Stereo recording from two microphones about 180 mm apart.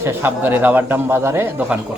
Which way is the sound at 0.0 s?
10° right (ahead or behind).